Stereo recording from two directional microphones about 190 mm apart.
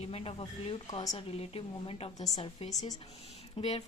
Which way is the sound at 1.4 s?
30° left (ahead or behind).